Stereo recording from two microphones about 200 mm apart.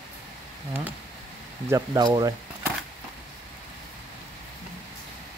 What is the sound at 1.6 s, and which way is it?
Speech, 15° right (ahead or behind).